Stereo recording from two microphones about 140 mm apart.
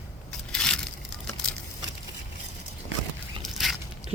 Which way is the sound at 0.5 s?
5° left (ahead or behind).